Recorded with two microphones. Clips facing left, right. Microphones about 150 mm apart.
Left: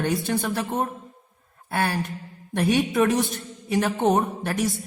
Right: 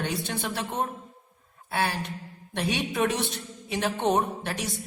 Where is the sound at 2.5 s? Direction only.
45° left (ahead or behind).